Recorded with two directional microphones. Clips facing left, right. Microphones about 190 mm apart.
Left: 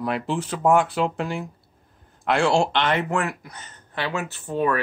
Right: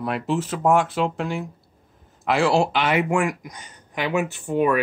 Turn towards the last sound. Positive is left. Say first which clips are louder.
# right 3 dB
turn(degrees=-15)  # may be behind; listen again after turning